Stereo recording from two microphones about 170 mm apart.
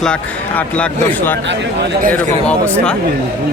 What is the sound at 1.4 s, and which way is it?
Speech, 90° right.